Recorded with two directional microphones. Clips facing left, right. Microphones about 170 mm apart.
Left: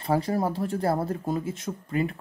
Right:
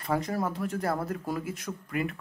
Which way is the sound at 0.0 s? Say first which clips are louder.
Left 4 dB; 30° left (ahead or behind).